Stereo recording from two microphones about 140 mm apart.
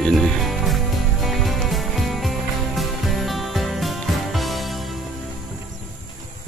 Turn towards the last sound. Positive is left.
turn(degrees=0)  # may be behind; listen again after turning